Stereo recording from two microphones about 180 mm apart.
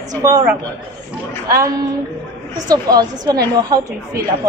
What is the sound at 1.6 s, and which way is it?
A woman's voice, 20° right (ahead or behind).